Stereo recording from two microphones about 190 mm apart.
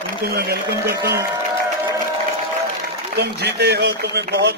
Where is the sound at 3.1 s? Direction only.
60° right (ahead or behind).